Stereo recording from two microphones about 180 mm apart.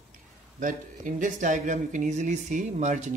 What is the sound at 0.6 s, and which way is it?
Speech, 45° right (ahead or behind).